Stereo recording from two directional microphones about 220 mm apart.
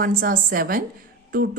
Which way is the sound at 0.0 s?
40° right (ahead or behind).